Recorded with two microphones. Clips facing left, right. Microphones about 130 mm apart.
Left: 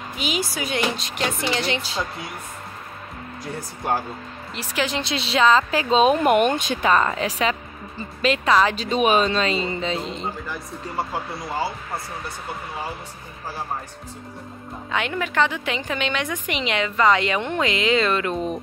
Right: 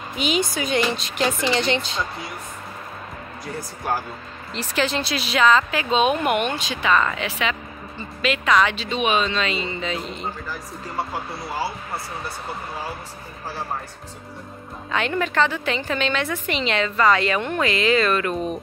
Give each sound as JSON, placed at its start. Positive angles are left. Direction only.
{"t": 0.2, "sound": "speech", "side_deg": 5}
{"t": 4.6, "sound": "speech", "side_deg": 10}
{"t": 14.9, "sound": "a woman's voice", "side_deg": 15}